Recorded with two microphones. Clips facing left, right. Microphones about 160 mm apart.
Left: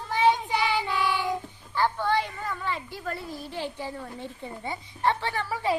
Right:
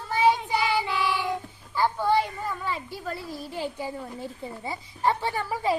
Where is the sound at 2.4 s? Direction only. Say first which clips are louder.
Right 1 dB; 10° right (ahead or behind).